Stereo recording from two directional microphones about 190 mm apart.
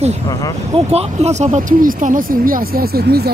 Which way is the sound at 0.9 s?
35° right (ahead or behind).